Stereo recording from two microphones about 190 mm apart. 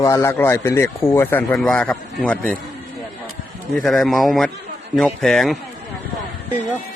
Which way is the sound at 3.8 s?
Centre (ahead or behind).